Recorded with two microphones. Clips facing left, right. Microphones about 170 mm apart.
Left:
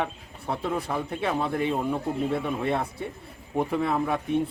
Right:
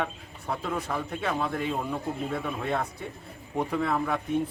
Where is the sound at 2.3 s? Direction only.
20° left (ahead or behind).